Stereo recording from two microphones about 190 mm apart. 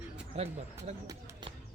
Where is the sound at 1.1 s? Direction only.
20° right (ahead or behind).